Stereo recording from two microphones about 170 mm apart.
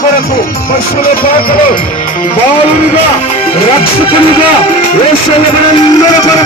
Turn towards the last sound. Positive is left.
turn(degrees=20)  # may be behind; listen again after turning